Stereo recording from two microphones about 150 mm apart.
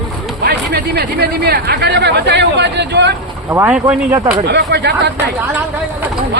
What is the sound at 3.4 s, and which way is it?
Speech, 10° right (ahead or behind).